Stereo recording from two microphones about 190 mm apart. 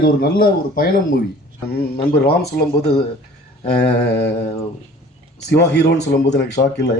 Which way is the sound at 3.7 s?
60° left (ahead or behind).